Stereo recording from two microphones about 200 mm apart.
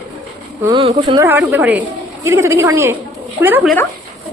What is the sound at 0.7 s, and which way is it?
Speech, 25° right (ahead or behind).